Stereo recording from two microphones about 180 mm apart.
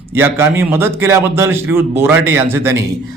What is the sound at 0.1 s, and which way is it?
A man's voice, 10° right (ahead or behind).